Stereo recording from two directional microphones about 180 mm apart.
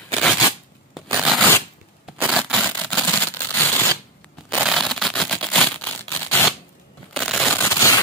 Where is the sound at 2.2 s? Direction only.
5° right (ahead or behind).